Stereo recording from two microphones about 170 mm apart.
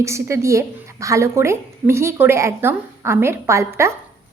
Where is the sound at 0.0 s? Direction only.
15° right (ahead or behind).